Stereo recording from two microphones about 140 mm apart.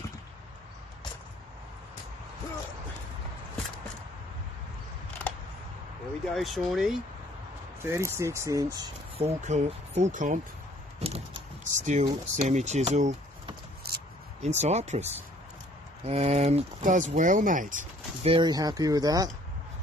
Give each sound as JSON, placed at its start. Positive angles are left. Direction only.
{"t": 5.2, "sound": "a sound", "side_deg": 10}
{"t": 6.2, "sound": "speech", "side_deg": 0}
{"t": 7.8, "sound": "speech", "side_deg": -20}
{"t": 9.2, "sound": "speech", "side_deg": -55}
{"t": 11.0, "sound": "a sound", "side_deg": -45}
{"t": 11.6, "sound": "speech", "side_deg": -60}
{"t": 13.9, "sound": "a sound", "side_deg": -90}
{"t": 14.4, "sound": "speech", "side_deg": -50}
{"t": 16.1, "sound": "speech", "side_deg": -50}
{"t": 18.2, "sound": "speech", "side_deg": -35}